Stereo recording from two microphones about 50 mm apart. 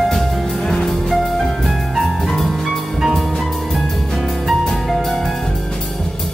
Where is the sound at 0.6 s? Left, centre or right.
Centre.